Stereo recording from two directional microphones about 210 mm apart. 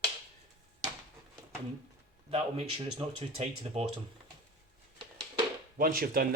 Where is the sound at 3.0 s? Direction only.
25° right (ahead or behind).